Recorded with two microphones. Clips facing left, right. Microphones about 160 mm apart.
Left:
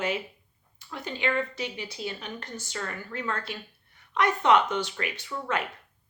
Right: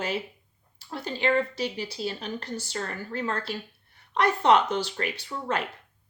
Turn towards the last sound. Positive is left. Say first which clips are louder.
# right 1 dB
turn(degrees=-35)  # may be behind; listen again after turning